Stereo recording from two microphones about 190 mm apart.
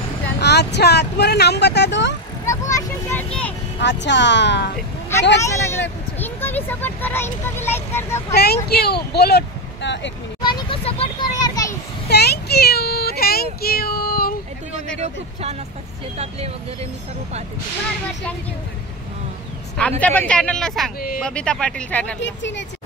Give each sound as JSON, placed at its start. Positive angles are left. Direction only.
{"t": 0.4, "sound": "speech", "side_deg": 60}
{"t": 2.4, "sound": "vehicle", "side_deg": 15}
{"t": 3.8, "sound": "a woman's voice", "side_deg": 65}
{"t": 5.4, "sound": "speech", "side_deg": 15}
{"t": 8.4, "sound": "speech", "side_deg": 55}
{"t": 10.4, "sound": "a child's voice", "side_deg": 25}
{"t": 12.1, "sound": "speech", "side_deg": 60}
{"t": 20.0, "sound": "speech", "side_deg": 10}
{"t": 22.2, "sound": "a woman's voice", "side_deg": 70}